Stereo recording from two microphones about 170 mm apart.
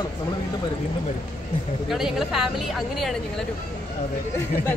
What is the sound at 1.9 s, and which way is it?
Speech, centre (ahead or behind).